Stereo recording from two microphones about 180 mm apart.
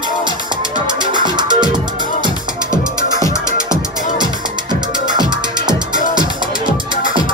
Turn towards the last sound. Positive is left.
turn(degrees=-25)  # may be behind; listen again after turning